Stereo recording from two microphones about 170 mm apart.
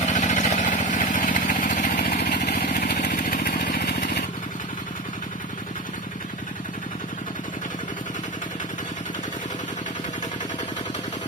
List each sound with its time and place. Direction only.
0.0 s vehicle: 45° left (ahead or behind)
2.0 s vehicle: 70° left (ahead or behind)
3.1 s vehicle: 55° left (ahead or behind); by 4.2 s 75° left (ahead or behind)